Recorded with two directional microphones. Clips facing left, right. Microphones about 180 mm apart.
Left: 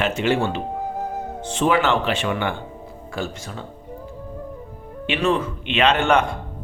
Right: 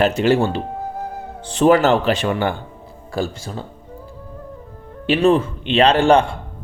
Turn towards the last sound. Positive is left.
turn(degrees=-30)  # may be behind; listen again after turning